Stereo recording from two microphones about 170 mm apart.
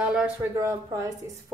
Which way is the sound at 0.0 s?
5° right (ahead or behind).